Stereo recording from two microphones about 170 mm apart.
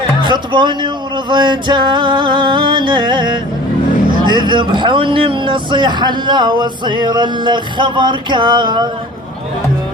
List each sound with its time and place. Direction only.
0.2 s a man's voice: 25° right (ahead or behind)